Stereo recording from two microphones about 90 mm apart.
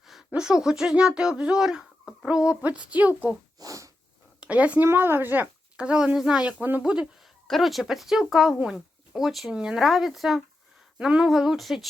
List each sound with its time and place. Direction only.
0.3 s speech: 5° right (ahead or behind)
3.6 s sniff: 40° right (ahead or behind)
4.4 s speech: 15° right (ahead or behind)
7.4 s speech: centre (ahead or behind)